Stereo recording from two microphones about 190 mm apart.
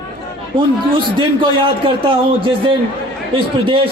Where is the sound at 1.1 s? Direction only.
25° right (ahead or behind).